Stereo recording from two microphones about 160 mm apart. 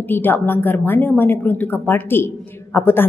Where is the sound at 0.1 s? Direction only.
10° left (ahead or behind).